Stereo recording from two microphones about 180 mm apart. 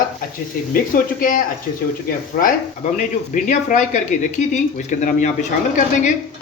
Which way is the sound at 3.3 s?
45° left (ahead or behind).